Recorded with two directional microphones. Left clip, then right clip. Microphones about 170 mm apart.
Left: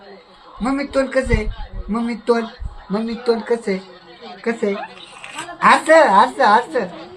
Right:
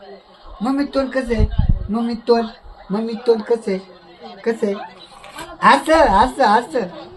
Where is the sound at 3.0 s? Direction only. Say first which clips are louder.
Right 3 dB; 45° right (ahead or behind).